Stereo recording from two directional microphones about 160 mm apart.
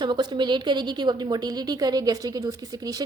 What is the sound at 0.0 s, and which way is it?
A woman's voice, 30° right (ahead or behind).